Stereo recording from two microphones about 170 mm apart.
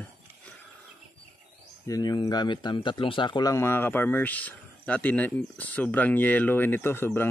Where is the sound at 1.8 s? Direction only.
20° left (ahead or behind).